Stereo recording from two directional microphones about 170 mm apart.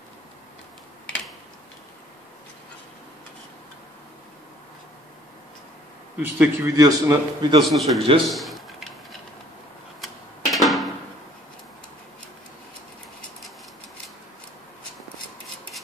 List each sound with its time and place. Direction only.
6.2 s a man's voice: 10° right (ahead or behind)
7.6 s a man's voice: centre (ahead or behind)
8.3 s a sound: centre (ahead or behind)
10.0 s music: centre (ahead or behind)